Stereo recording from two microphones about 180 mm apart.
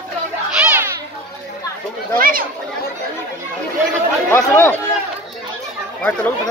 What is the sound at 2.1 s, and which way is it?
Speech, 50° right (ahead or behind).